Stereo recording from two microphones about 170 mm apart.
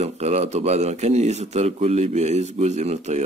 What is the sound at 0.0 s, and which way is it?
Speech, 40° right (ahead or behind).